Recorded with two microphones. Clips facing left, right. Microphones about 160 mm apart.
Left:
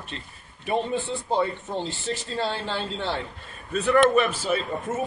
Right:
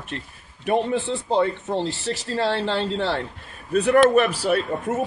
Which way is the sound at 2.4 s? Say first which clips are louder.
Right 7 dB; 75° right (ahead or behind).